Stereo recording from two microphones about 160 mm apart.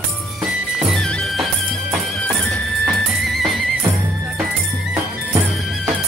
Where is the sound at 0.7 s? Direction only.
Centre (ahead or behind).